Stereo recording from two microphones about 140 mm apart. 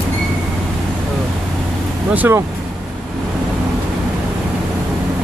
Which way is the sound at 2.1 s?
15° right (ahead or behind).